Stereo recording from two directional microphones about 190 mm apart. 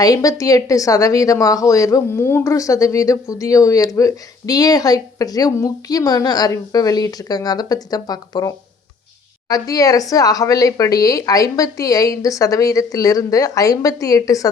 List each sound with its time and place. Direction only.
0.0 s speech: 20° left (ahead or behind)